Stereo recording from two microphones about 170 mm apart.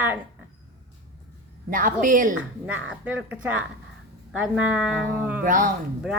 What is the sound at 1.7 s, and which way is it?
Speech, 50° right (ahead or behind).